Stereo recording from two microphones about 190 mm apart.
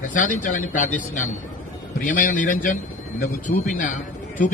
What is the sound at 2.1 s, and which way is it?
A man's voice, 45° left (ahead or behind).